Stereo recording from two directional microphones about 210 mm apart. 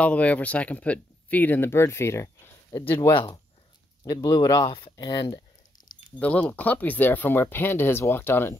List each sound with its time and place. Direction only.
0.0 s speech: 5° left (ahead or behind)
3.1 s speech: 25° left (ahead or behind)
6.1 s speech: 5° left (ahead or behind)